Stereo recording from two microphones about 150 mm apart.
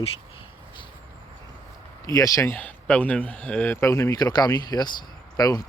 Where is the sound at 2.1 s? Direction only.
25° left (ahead or behind).